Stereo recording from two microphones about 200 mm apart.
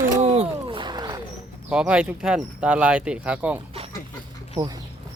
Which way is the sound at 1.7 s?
5° right (ahead or behind).